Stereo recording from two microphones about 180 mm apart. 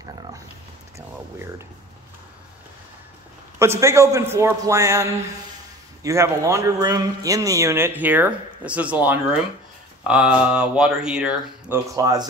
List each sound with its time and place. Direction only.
3.5 s speech: 15° right (ahead or behind)
6.0 s speech: 15° right (ahead or behind)
11.9 s speech: 20° right (ahead or behind)